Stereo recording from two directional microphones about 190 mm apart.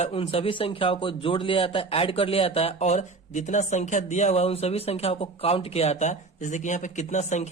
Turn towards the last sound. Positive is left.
turn(degrees=40)  # may be behind; listen again after turning